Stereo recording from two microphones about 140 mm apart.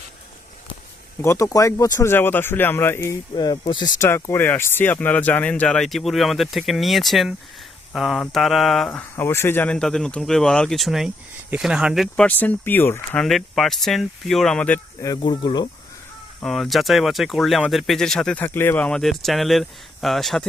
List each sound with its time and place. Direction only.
1.2 s speech: 20° left (ahead or behind)
3.3 s speech: 30° left (ahead or behind)
4.0 s speech: 15° left (ahead or behind); by 12.0 s 5° right (ahead or behind)
12.1 s speech: 10° left (ahead or behind)
13.2 s speech: centre (ahead or behind)
15.0 s speech: 30° left (ahead or behind)
16.4 s speech: centre (ahead or behind)